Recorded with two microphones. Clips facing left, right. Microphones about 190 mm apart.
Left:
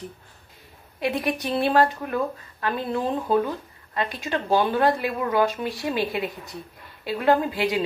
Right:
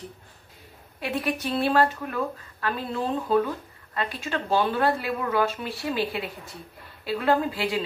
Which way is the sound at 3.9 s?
15° left (ahead or behind).